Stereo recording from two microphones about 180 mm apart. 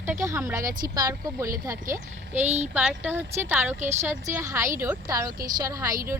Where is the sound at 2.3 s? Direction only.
40° right (ahead or behind).